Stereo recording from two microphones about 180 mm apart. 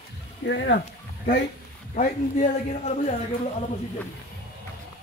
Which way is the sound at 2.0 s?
40° left (ahead or behind).